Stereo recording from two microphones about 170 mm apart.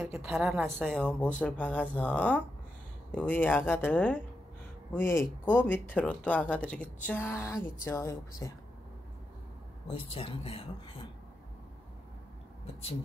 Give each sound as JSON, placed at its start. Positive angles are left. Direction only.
{"t": 0.0, "sound": "a woman's voice", "side_deg": -5}
{"t": 9.8, "sound": "speech", "side_deg": 35}